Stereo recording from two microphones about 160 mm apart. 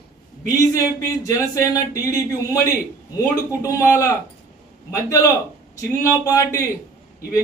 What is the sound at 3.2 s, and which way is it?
Speech, 20° left (ahead or behind).